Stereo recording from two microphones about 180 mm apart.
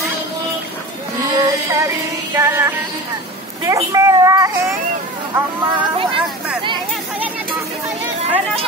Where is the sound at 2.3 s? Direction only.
10° right (ahead or behind).